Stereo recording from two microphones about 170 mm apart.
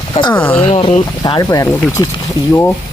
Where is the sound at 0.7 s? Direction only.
35° left (ahead or behind); by 2.1 s 20° left (ahead or behind).